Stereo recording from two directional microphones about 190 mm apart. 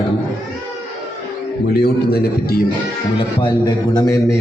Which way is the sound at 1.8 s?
55° left (ahead or behind).